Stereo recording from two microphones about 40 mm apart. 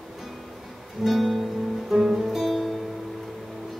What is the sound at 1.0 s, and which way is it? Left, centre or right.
Music, centre.